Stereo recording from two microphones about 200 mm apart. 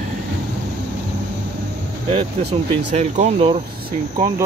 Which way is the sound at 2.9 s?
35° right (ahead or behind).